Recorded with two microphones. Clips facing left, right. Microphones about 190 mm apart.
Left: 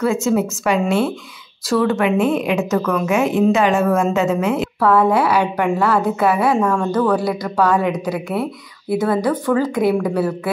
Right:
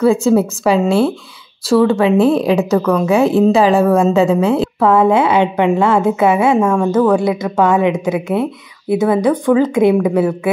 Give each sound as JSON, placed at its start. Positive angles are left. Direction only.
{"t": 0.0, "sound": "a woman's voice", "side_deg": -30}